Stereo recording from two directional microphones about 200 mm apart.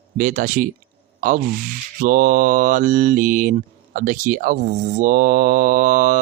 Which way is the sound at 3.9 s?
40° right (ahead or behind).